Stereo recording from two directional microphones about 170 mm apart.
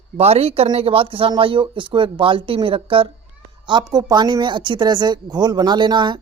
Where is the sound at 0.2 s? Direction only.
35° right (ahead or behind).